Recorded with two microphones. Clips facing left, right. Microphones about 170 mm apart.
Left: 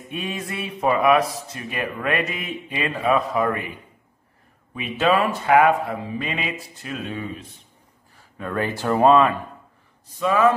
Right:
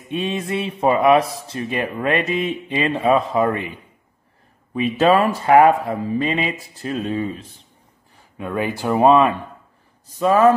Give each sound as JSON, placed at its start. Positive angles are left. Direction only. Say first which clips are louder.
{"t": 0.1, "sound": "speech", "louder": "right 7 dB", "side_deg": -25}
{"t": 4.9, "sound": "speech", "louder": "right 3 dB", "side_deg": -40}
{"t": 8.4, "sound": "speech", "louder": "right 2 dB", "side_deg": -15}
{"t": 10.1, "sound": "speech", "louder": "right 4 dB", "side_deg": -40}